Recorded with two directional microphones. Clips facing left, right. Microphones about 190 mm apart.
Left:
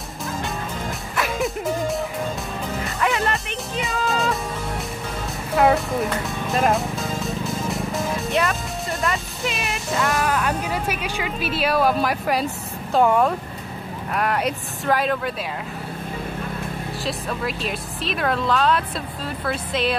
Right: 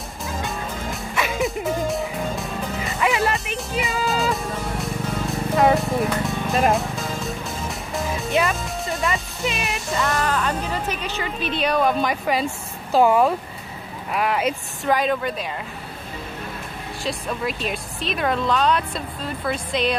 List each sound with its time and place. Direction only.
1.1 s music: centre (ahead or behind)
9.0 s speech: centre (ahead or behind)
17.0 s speech: centre (ahead or behind)